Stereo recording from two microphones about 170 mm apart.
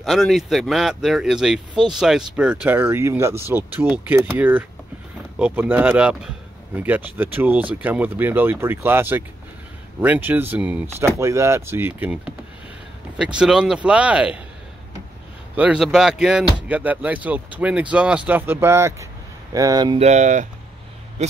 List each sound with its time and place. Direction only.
0.0 s speech: centre (ahead or behind)
15.5 s speech: 5° right (ahead or behind); by 20.0 s 25° right (ahead or behind)
20.0 s speech: 45° right (ahead or behind)